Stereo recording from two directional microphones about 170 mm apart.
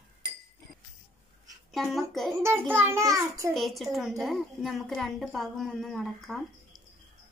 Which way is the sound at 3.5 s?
Centre (ahead or behind).